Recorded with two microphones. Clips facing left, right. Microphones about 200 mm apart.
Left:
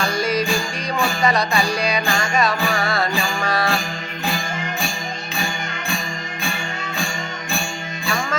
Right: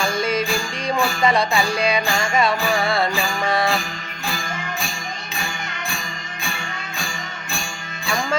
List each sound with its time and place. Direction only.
0.1 s music: 25° right (ahead or behind)